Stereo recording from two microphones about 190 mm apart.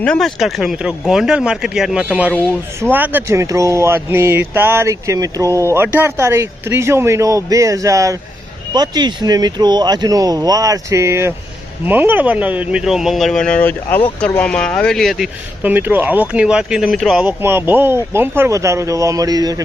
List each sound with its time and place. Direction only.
0.0 s speech: 5° left (ahead or behind)
2.3 s speech: 5° left (ahead or behind)
2.9 s speech: 10° right (ahead or behind)